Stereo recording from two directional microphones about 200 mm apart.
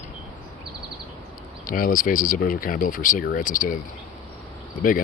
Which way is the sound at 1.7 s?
45° left (ahead or behind).